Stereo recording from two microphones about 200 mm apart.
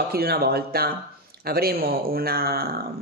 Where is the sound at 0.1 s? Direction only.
50° right (ahead or behind).